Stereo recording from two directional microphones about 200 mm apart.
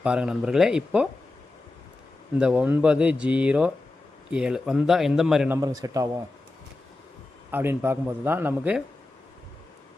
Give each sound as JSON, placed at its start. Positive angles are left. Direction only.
{"t": 0.0, "sound": "speech", "side_deg": -5}
{"t": 2.3, "sound": "speech", "side_deg": -5}
{"t": 5.5, "sound": "speech", "side_deg": -20}
{"t": 7.5, "sound": "speech", "side_deg": -10}